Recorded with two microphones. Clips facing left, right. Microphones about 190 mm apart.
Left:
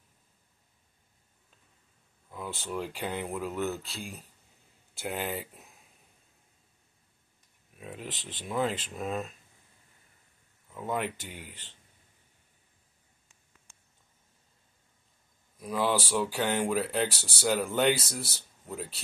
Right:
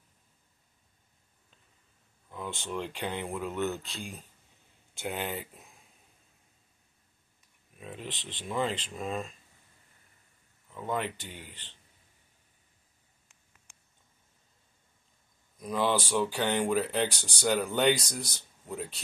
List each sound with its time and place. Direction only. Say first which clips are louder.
2.3 s speech: even; 5° left (ahead or behind)
7.7 s a sound: even; 5° left (ahead or behind)
8.1 s speech: even; 40° left (ahead or behind)
8.5 s speech: left 1 dB; 5° left (ahead or behind)
10.7 s speech: even; 10° left (ahead or behind)
15.6 s speech: even; 5° left (ahead or behind)